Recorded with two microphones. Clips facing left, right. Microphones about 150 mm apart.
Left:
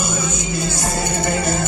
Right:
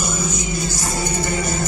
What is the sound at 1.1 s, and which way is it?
Music, 60° left (ahead or behind).